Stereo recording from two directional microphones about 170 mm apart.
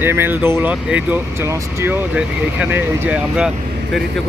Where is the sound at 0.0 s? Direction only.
15° right (ahead or behind).